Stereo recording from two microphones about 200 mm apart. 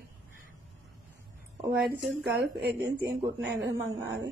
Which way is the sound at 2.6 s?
60° right (ahead or behind).